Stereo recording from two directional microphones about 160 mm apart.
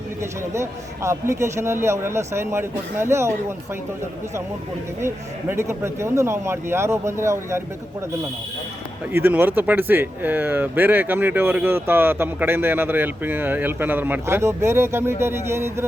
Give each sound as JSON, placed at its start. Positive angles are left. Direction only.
{"t": 0.2, "sound": "speech", "side_deg": -15}
{"t": 4.9, "sound": "speech", "side_deg": -15}
{"t": 9.1, "sound": "speech", "side_deg": -10}